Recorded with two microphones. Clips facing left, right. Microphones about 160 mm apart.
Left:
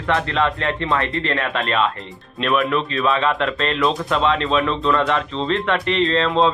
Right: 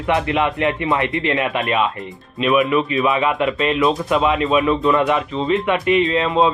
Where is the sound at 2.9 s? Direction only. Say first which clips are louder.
Right 2 dB; 20° right (ahead or behind).